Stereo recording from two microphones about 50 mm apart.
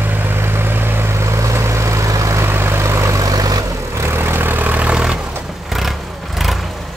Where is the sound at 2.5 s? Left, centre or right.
Right.